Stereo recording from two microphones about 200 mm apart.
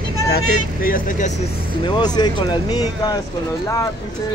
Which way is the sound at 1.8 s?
20° left (ahead or behind).